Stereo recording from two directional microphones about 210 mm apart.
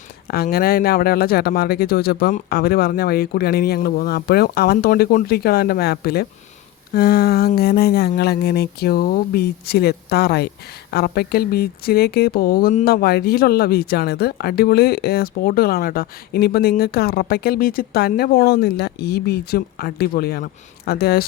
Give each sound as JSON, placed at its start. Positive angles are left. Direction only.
{"t": 0.3, "sound": "speech", "side_deg": 45}